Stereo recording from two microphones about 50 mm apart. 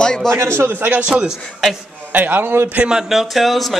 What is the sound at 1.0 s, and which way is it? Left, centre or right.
Speech, right.